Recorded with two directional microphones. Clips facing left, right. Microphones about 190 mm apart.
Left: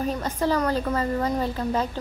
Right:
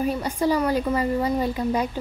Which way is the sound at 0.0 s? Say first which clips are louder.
Right 2 dB; 10° right (ahead or behind).